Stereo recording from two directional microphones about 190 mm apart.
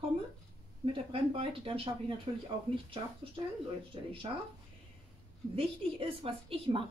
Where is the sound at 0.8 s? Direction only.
30° right (ahead or behind).